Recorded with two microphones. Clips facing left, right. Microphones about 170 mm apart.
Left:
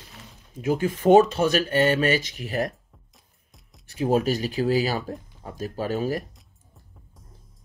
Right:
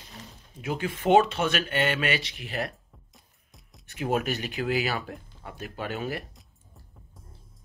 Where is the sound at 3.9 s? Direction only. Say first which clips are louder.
Left 5 dB; 30° left (ahead or behind).